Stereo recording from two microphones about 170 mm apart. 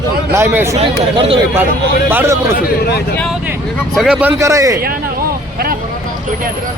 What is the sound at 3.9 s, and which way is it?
Speech, 5° right (ahead or behind).